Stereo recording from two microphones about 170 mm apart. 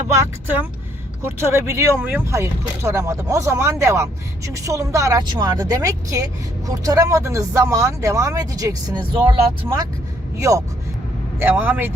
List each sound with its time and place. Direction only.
0.1 s speech: 10° right (ahead or behind)
11.3 s speech: 10° right (ahead or behind)